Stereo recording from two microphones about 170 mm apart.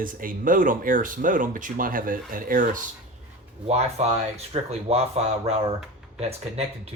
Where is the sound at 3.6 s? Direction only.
40° right (ahead or behind).